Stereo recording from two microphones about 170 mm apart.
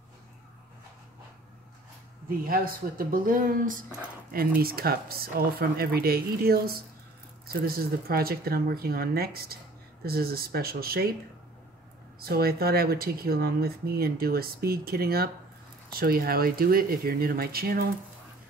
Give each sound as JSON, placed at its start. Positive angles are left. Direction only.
{"t": 2.2, "sound": "speech", "side_deg": -60}
{"t": 12.2, "sound": "speech", "side_deg": -60}